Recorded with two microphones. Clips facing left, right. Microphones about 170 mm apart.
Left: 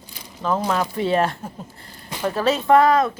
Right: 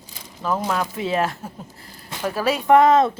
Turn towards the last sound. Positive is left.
turn(degrees=-25)  # may be behind; listen again after turning